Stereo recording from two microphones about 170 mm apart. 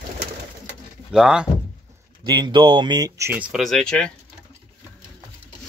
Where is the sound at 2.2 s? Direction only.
25° right (ahead or behind); by 3.8 s centre (ahead or behind).